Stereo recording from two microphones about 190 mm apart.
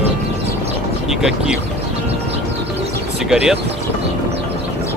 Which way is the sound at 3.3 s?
5° right (ahead or behind).